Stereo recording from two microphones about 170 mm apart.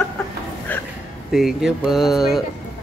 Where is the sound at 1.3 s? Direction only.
Centre (ahead or behind).